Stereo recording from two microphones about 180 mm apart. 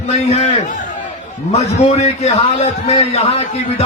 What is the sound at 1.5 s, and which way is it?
A man's voice, 40° left (ahead or behind).